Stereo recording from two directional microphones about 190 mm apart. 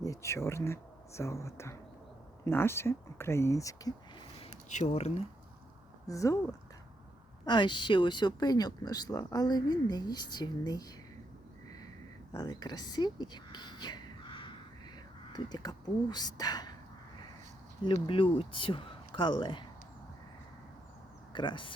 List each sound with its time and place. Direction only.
0.0 s speech: 15° left (ahead or behind)
4.7 s speech: 40° left (ahead or behind)
6.1 s speech: 15° left (ahead or behind)
7.4 s speech: 25° left (ahead or behind)
12.3 s speech: 20° left (ahead or behind)
17.8 s speech: 25° left (ahead or behind)
21.3 s speech: 25° left (ahead or behind)